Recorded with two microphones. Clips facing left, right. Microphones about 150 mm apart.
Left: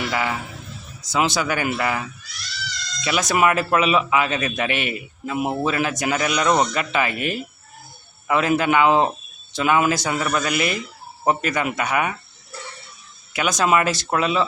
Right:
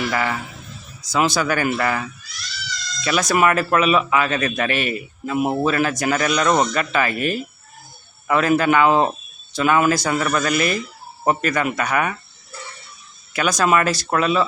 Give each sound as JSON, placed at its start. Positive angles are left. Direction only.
{"t": 0.1, "sound": "a man's voice", "side_deg": 15}
{"t": 13.3, "sound": "speech", "side_deg": 20}